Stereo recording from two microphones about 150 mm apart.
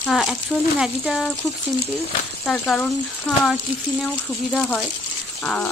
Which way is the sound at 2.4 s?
5° left (ahead or behind).